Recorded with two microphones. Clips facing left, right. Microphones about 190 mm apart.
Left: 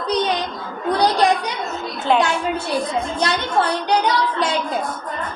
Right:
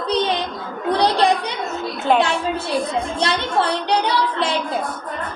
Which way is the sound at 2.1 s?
45° right (ahead or behind).